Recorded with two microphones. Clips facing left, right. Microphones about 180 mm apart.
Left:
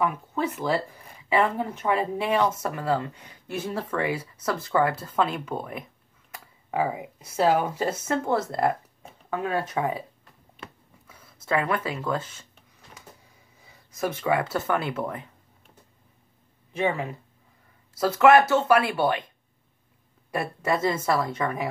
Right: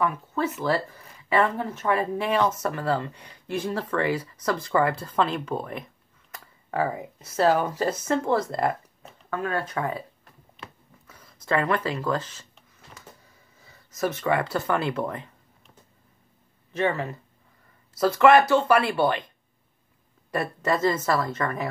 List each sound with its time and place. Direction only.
0.0 s speech: 15° left (ahead or behind)
9.3 s speech: 15° left (ahead or behind)
11.1 s speech: 5° left (ahead or behind)
13.7 s speech: 10° left (ahead or behind)
16.7 s speech: 10° left (ahead or behind)
20.2 s speech: 10° left (ahead or behind)